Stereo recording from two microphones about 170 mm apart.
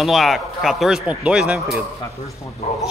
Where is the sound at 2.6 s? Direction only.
40° left (ahead or behind).